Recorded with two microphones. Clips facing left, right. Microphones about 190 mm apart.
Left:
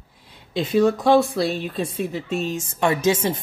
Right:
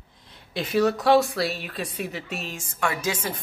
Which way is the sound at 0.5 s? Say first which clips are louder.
Left 4 dB; 25° left (ahead or behind).